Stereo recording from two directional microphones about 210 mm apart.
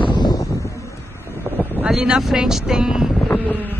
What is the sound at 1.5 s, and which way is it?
Boat, 10° left (ahead or behind).